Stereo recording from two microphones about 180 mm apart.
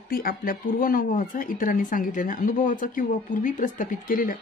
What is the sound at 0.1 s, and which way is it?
Speech, 55° left (ahead or behind).